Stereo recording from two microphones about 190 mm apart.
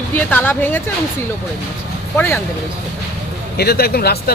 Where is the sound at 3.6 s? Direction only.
55° left (ahead or behind).